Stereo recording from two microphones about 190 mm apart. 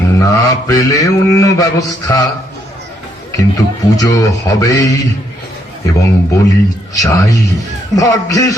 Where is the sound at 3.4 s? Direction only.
15° left (ahead or behind).